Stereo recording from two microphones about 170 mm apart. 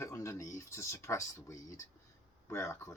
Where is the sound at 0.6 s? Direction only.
15° left (ahead or behind).